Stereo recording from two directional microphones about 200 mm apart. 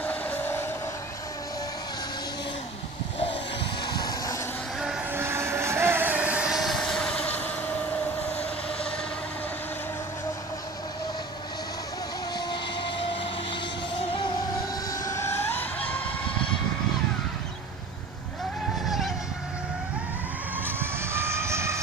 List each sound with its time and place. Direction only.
0.0 s a sound: 10° left (ahead or behind)
3.8 s vehicle: 20° left (ahead or behind)
4.7 s vehicle: centre (ahead or behind)
5.1 s vehicle: 10° right (ahead or behind); by 7.5 s 5° left (ahead or behind)
12.4 s vehicle: 25° left (ahead or behind)
15.0 s vehicle: 15° left (ahead or behind)
18.9 s vehicle: centre (ahead or behind)
20.6 s vehicle: 10° right (ahead or behind)